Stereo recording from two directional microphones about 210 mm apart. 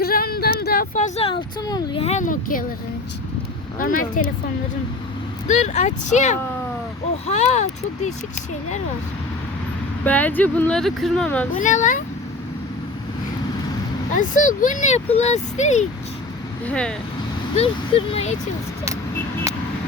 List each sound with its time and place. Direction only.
0.0 s a sound: 45° left (ahead or behind)
3.8 s speech: 40° left (ahead or behind)
5.5 s speech: 35° left (ahead or behind)
10.0 s speech: 10° left (ahead or behind)
11.5 s speech: 35° left (ahead or behind)
14.1 s speech: 35° left (ahead or behind)
16.6 s speech: 5° left (ahead or behind)
17.5 s speech: 30° left (ahead or behind)